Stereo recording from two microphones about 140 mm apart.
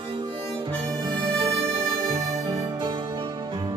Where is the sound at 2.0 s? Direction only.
25° right (ahead or behind).